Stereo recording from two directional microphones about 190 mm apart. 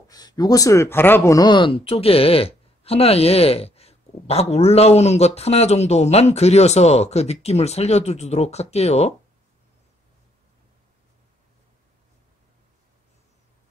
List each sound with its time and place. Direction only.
0.1 s speech: 20° left (ahead or behind)